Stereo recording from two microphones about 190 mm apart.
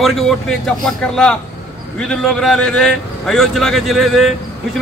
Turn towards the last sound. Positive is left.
turn(degrees=0)  # may be behind; listen again after turning